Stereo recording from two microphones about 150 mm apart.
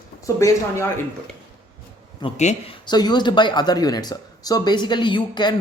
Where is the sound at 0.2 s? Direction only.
20° left (ahead or behind).